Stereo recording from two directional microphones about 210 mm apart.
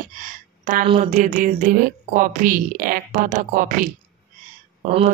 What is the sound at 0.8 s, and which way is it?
A woman's voice, 30° right (ahead or behind).